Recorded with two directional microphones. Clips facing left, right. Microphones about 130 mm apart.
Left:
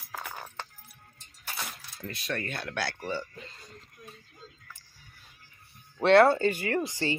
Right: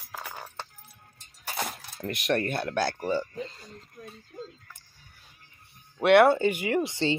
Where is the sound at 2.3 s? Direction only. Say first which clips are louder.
Right 7 dB; 40° right (ahead or behind).